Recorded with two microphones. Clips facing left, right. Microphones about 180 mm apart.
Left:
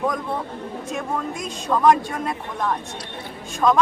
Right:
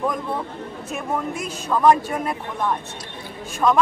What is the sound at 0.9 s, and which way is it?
A man's voice, 5° right (ahead or behind).